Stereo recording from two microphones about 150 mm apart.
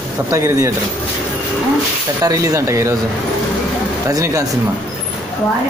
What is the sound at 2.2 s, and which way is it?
Speech, 20° right (ahead or behind).